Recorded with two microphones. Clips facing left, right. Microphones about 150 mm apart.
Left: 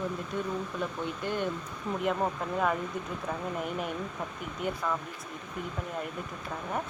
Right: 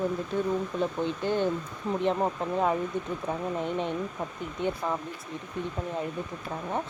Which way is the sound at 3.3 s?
25° right (ahead or behind).